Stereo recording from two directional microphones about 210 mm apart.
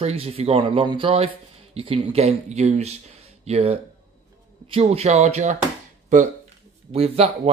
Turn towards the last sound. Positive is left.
turn(degrees=-30)  # may be behind; listen again after turning